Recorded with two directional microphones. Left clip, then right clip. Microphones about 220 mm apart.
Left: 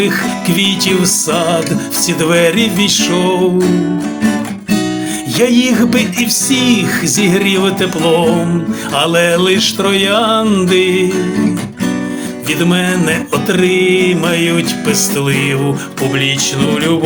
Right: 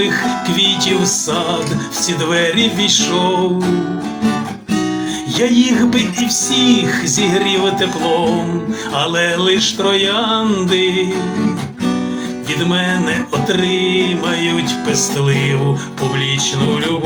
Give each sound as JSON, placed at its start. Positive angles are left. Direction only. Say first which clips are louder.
{"t": 0.0, "sound": "music", "louder": "left 1 dB", "side_deg": 55}
{"t": 5.4, "sound": "music", "louder": "left 3 dB", "side_deg": 55}
{"t": 9.0, "sound": "music", "louder": "left 5 dB", "side_deg": 55}
{"t": 12.5, "sound": "music", "louder": "left 2 dB", "side_deg": 55}